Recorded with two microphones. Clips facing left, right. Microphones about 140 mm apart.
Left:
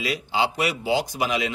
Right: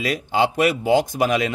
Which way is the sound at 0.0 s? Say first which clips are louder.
Right 4 dB; 50° right (ahead or behind).